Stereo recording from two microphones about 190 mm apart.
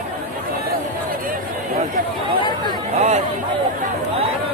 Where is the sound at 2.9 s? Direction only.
35° right (ahead or behind).